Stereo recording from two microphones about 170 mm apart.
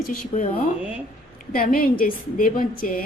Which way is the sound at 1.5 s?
60° left (ahead or behind).